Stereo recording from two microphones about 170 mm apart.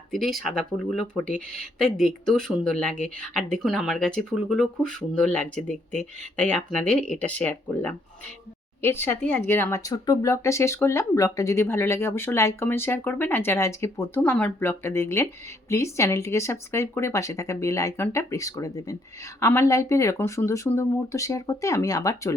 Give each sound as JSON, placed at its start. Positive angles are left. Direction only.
{"t": 0.1, "sound": "speech", "side_deg": 0}